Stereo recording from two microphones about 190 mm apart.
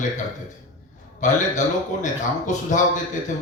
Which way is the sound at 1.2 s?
40° left (ahead or behind).